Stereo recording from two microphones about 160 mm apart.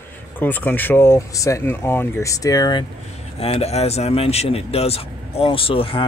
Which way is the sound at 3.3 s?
40° left (ahead or behind).